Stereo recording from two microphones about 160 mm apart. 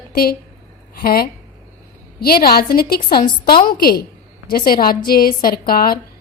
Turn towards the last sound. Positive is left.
turn(degrees=70)  # may be behind; listen again after turning